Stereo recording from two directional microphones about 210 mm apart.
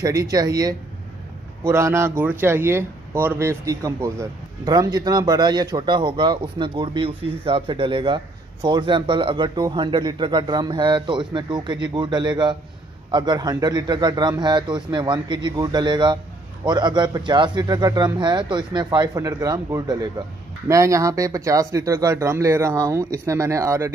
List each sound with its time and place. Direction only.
0.0 s speech: 15° right (ahead or behind)